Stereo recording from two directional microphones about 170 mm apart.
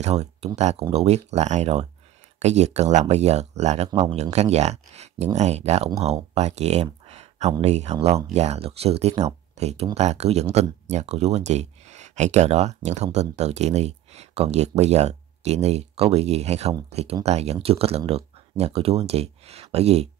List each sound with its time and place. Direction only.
0.0 s speech: 40° right (ahead or behind)